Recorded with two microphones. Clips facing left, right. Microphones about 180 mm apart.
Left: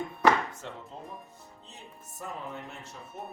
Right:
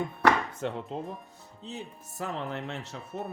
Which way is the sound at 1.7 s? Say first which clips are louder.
Right 11 dB; 85° right.